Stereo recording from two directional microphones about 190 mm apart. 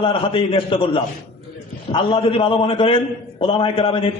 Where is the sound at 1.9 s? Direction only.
25° left (ahead or behind).